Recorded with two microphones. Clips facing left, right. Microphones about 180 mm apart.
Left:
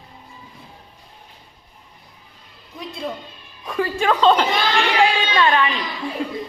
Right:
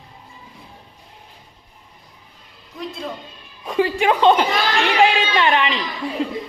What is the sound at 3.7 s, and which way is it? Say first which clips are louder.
A woman's voice: right 2 dB; 20° right (ahead or behind).